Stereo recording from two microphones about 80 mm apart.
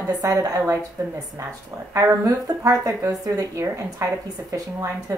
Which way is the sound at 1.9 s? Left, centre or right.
Right.